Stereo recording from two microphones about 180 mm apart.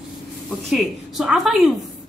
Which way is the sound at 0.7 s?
Centre (ahead or behind).